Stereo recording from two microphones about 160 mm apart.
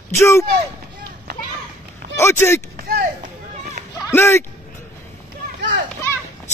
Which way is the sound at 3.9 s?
15° left (ahead or behind).